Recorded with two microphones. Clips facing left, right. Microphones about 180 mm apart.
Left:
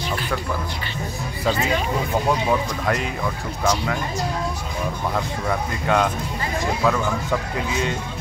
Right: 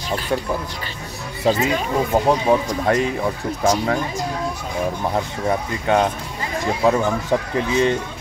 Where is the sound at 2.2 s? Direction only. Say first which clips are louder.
Right 4 dB; 35° right (ahead or behind).